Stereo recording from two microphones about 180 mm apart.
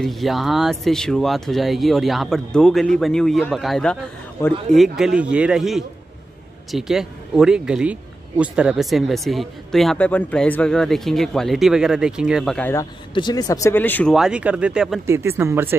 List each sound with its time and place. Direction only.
0.0 s speech: centre (ahead or behind)
12.5 s speech: 10° left (ahead or behind)
13.1 s speech: 25° left (ahead or behind)
14.1 s speech: 5° right (ahead or behind)